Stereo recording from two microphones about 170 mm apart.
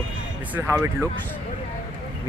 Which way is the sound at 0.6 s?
15° right (ahead or behind).